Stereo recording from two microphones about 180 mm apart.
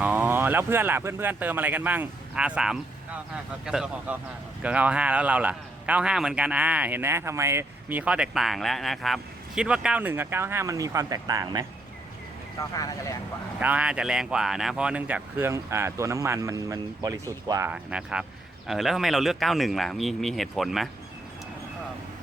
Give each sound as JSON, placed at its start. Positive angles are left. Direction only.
{"t": 0.0, "sound": "a man's voice", "side_deg": -10}
{"t": 12.7, "sound": "speech", "side_deg": 20}
{"t": 13.6, "sound": "a man's voice", "side_deg": -10}